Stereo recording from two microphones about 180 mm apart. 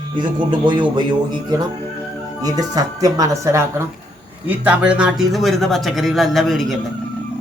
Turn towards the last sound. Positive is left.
turn(degrees=0)  # may be behind; listen again after turning